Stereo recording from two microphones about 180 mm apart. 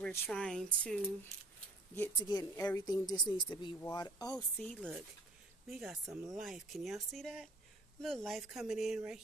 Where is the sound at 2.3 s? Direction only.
20° left (ahead or behind).